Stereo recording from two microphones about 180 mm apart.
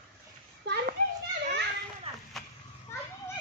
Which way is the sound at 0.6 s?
70° right (ahead or behind).